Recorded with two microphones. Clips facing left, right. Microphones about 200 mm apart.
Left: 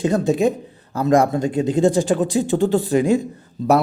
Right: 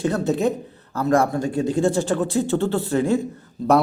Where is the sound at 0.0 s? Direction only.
15° left (ahead or behind).